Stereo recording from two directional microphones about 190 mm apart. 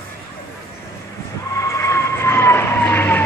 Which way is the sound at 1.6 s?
15° left (ahead or behind).